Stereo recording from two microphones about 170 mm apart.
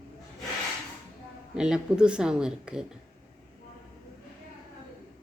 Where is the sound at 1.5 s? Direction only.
5° right (ahead or behind).